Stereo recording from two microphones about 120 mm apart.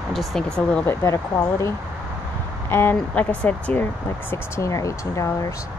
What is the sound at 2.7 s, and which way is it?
Speech, 20° left (ahead or behind).